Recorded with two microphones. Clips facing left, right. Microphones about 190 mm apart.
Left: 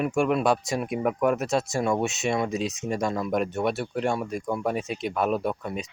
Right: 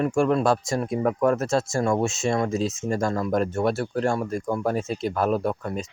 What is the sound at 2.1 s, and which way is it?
Speech, 20° left (ahead or behind).